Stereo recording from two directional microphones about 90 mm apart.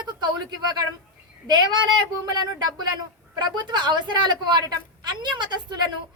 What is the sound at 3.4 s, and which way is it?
A woman's voice, 55° right (ahead or behind).